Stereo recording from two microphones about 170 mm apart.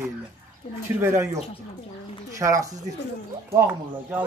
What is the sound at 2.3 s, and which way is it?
A man's voice, 20° right (ahead or behind).